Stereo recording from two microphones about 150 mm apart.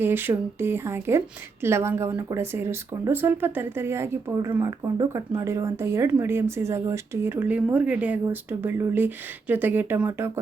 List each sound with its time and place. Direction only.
0.0 s a woman's voice: 15° right (ahead or behind)